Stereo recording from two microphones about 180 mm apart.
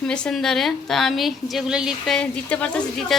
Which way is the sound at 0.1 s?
5° left (ahead or behind).